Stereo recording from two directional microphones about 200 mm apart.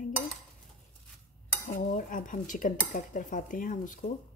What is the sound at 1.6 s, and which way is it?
Dishes, 40° left (ahead or behind).